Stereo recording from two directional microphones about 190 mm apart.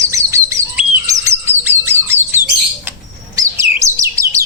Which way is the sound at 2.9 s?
10° right (ahead or behind).